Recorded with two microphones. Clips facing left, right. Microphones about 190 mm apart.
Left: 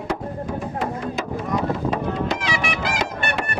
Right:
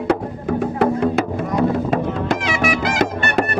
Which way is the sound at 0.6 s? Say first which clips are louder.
Right 12 dB; 65° right (ahead or behind).